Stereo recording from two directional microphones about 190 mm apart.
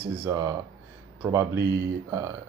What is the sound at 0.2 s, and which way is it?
Speech, 15° right (ahead or behind).